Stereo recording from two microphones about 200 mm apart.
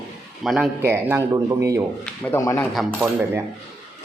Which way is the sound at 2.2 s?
15° left (ahead or behind).